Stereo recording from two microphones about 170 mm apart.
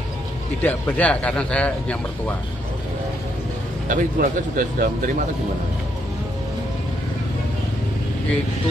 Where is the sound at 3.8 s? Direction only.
50° right (ahead or behind).